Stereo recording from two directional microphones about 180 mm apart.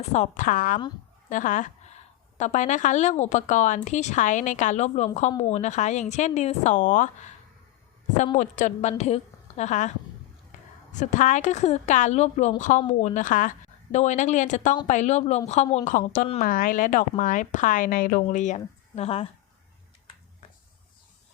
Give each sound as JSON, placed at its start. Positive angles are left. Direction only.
{"t": 0.1, "sound": "a woman's voice", "side_deg": 45}
{"t": 8.4, "sound": "speech", "side_deg": 45}
{"t": 11.0, "sound": "a woman's voice", "side_deg": 45}